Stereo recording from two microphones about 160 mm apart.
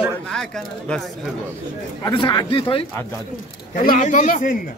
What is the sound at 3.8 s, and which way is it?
Speech, 55° left (ahead or behind).